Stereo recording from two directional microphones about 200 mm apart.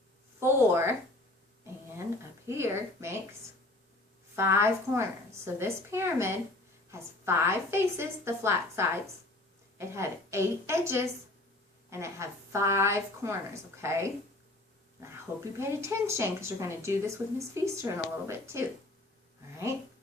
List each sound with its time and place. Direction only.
0.3 s speech: 10° right (ahead or behind)
2.5 s speech: 15° right (ahead or behind)
4.4 s speech: 10° right (ahead or behind)
15.5 s speech: 15° right (ahead or behind)